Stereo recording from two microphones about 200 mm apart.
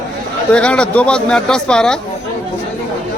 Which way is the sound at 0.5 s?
5° left (ahead or behind).